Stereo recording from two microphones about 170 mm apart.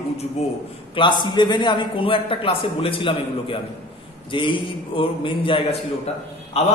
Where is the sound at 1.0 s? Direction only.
25° left (ahead or behind).